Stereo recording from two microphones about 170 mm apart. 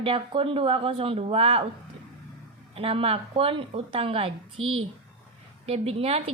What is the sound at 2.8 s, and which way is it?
A woman's voice, 35° right (ahead or behind).